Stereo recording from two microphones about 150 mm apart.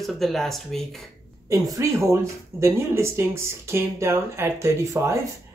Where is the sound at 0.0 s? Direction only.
Centre (ahead or behind).